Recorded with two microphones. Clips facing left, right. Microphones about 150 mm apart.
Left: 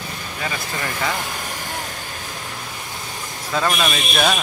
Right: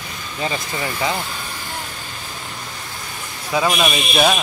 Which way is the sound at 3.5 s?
10° right (ahead or behind).